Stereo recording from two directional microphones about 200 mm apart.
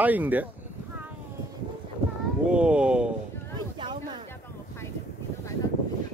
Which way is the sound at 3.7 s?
25° right (ahead or behind).